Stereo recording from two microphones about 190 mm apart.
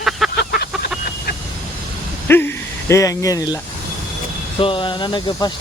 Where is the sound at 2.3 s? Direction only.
10° left (ahead or behind).